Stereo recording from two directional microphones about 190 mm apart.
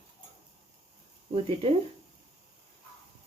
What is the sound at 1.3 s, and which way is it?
Speech, 30° right (ahead or behind).